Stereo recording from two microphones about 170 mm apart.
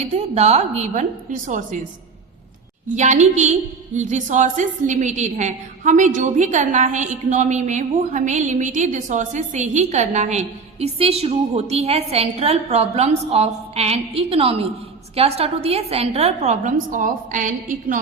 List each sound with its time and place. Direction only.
0.0 s a woman's voice: 40° right (ahead or behind)
2.9 s a woman's voice: 45° right (ahead or behind)